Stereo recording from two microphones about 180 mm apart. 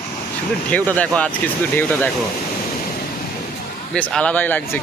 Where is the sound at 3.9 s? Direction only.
5° left (ahead or behind).